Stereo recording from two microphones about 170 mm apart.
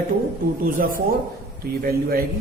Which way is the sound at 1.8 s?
65° right (ahead or behind).